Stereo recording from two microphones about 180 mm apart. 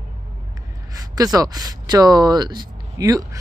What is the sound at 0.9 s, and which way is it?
Speech, 20° right (ahead or behind).